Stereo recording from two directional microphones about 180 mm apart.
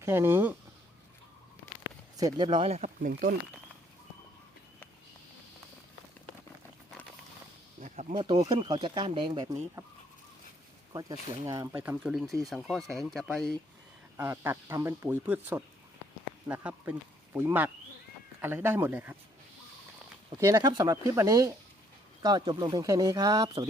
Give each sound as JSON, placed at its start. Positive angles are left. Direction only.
{"t": 0.0, "sound": "speech", "side_deg": -15}
{"t": 2.1, "sound": "speech", "side_deg": -20}
{"t": 7.8, "sound": "a sound", "side_deg": -45}
{"t": 8.1, "sound": "speech", "side_deg": -30}
{"t": 9.8, "sound": "speech", "side_deg": -15}
{"t": 10.9, "sound": "speech", "side_deg": -20}
{"t": 14.2, "sound": "speech", "side_deg": -15}
{"t": 20.4, "sound": "speech", "side_deg": -20}